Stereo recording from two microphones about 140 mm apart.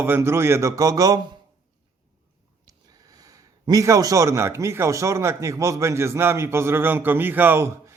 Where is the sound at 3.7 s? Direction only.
25° right (ahead or behind).